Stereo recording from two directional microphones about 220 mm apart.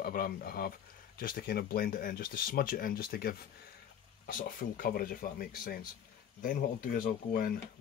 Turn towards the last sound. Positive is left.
turn(degrees=40)  # may be behind; listen again after turning